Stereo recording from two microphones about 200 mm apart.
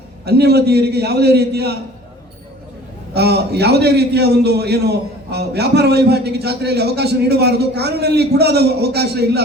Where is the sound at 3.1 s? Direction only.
55° right (ahead or behind).